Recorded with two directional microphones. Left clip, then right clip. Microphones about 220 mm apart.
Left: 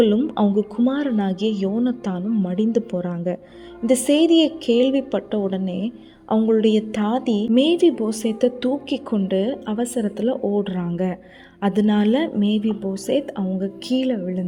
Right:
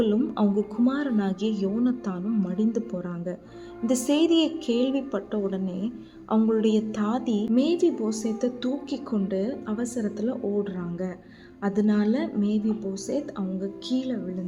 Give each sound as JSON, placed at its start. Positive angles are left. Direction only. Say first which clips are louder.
{"t": 0.0, "sound": "a woman's voice", "louder": "left 6 dB", "side_deg": 20}